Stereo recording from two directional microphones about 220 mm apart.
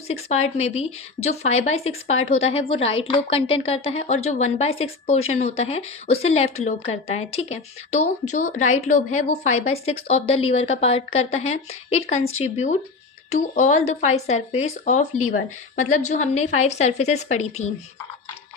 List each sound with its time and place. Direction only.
0.1 s speech: 30° left (ahead or behind)